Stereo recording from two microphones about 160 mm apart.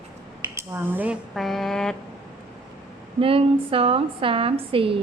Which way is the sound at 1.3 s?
Centre (ahead or behind).